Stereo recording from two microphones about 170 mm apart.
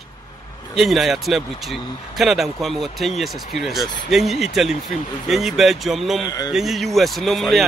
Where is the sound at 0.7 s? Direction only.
Centre (ahead or behind).